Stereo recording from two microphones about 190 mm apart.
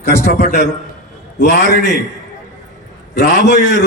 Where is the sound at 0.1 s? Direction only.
45° right (ahead or behind).